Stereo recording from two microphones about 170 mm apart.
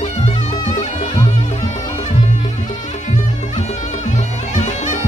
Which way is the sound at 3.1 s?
45° left (ahead or behind).